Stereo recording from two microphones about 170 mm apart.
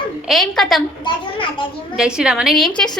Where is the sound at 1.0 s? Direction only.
30° left (ahead or behind).